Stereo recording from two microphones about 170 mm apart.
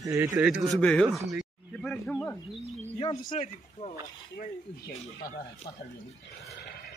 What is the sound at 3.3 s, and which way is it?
Speech, 40° left (ahead or behind).